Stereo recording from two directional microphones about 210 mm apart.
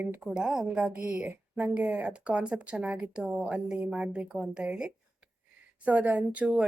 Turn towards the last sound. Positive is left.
turn(degrees=-5)  # may be behind; listen again after turning